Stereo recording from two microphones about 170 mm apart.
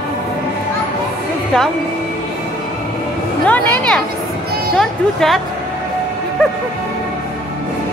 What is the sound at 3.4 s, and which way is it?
Speech, 10° left (ahead or behind).